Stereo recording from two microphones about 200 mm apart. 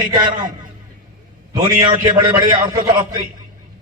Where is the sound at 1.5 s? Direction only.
20° right (ahead or behind).